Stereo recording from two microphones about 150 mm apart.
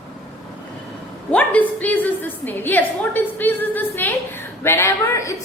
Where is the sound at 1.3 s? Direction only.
10° left (ahead or behind).